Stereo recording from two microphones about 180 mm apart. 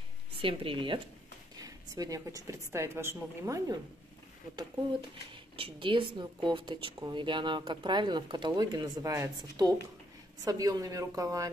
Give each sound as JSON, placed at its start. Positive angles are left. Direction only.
{"t": 0.4, "sound": "a woman's voice", "side_deg": -30}
{"t": 5.3, "sound": "speech", "side_deg": -30}